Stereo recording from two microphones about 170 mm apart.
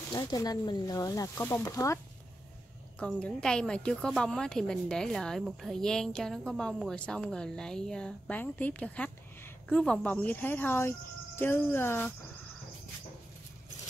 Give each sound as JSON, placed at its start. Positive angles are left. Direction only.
{"t": 0.1, "sound": "speech", "side_deg": 20}
{"t": 3.2, "sound": "a woman's voice", "side_deg": 5}